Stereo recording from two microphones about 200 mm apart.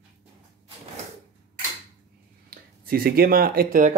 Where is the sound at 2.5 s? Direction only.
50° right (ahead or behind).